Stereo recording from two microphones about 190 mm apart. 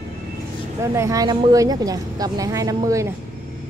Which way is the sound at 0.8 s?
15° right (ahead or behind).